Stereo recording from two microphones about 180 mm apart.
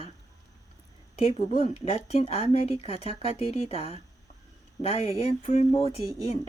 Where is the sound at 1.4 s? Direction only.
35° left (ahead or behind).